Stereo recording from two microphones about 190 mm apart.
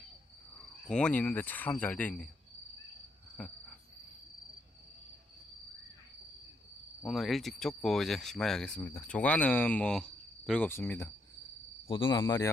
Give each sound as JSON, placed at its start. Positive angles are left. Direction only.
{"t": 0.8, "sound": "speech", "side_deg": 5}
{"t": 3.4, "sound": "speech", "side_deg": 5}
{"t": 7.1, "sound": "speech", "side_deg": 0}
{"t": 11.9, "sound": "speech", "side_deg": 25}